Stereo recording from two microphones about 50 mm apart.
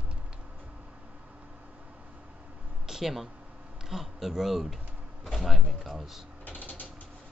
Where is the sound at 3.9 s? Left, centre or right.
Centre.